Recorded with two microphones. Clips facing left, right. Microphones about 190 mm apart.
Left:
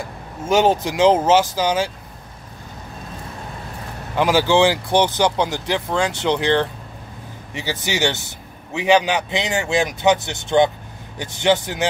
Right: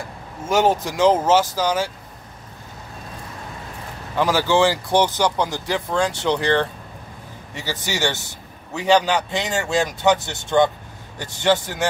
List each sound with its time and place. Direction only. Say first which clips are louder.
0.5 s speech: left 2 dB; 20° left (ahead or behind)
4.2 s speech: left 2 dB; 20° left (ahead or behind)
7.8 s speech: left 2 dB; 20° left (ahead or behind)